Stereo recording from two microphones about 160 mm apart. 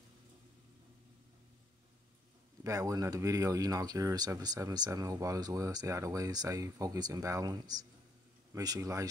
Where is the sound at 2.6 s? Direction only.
20° right (ahead or behind).